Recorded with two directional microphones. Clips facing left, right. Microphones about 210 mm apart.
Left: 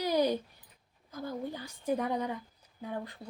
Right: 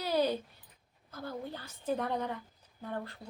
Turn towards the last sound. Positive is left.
turn(degrees=15)  # may be behind; listen again after turning